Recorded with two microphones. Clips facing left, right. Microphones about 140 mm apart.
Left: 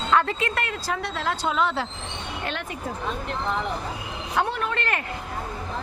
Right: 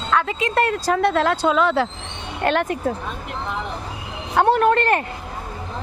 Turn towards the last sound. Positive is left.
turn(degrees=-45)  # may be behind; listen again after turning